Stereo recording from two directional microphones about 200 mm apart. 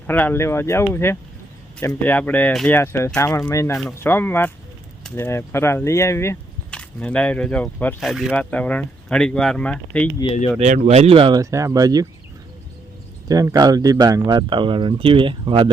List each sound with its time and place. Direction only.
0.1 s speech: 10° left (ahead or behind)
10.6 s speech: 35° right (ahead or behind); by 12.0 s 20° right (ahead or behind)
13.2 s speech: 20° right (ahead or behind)